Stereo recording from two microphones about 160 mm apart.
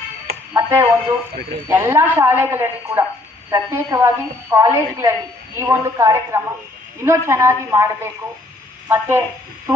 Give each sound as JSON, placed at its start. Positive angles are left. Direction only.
{"t": 0.5, "sound": "a woman's voice", "side_deg": -15}